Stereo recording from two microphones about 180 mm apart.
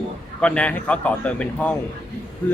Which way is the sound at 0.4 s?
5° left (ahead or behind).